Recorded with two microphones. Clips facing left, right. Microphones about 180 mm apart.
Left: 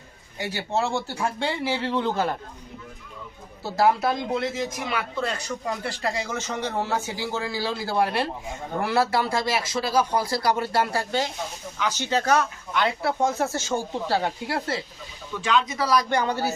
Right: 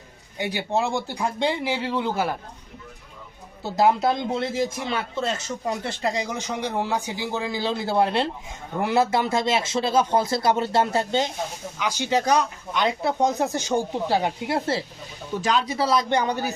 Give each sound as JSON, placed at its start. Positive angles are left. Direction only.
{"t": 0.3, "sound": "speech", "side_deg": -15}
{"t": 3.6, "sound": "a man's voice", "side_deg": -20}
{"t": 15.3, "sound": "a man's voice", "side_deg": -40}